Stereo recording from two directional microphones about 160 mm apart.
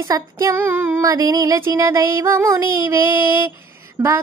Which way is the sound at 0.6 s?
10° right (ahead or behind).